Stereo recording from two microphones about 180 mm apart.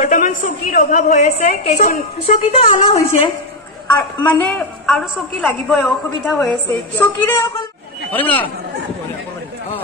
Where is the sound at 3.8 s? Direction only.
10° left (ahead or behind).